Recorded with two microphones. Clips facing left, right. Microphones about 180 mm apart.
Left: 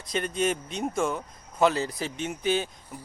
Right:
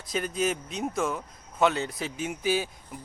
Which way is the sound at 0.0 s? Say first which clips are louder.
Left 1 dB; 5° right (ahead or behind).